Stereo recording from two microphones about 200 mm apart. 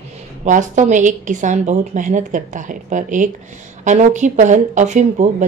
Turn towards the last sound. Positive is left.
turn(degrees=-35)  # may be behind; listen again after turning